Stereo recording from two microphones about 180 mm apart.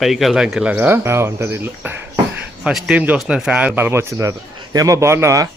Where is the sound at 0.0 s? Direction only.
Centre (ahead or behind); by 5.5 s 15° right (ahead or behind).